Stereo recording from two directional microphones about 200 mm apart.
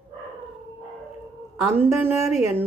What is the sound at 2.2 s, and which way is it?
Speech, centre (ahead or behind).